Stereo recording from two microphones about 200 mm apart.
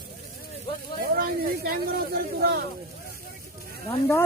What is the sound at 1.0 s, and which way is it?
Speech, 50° right (ahead or behind).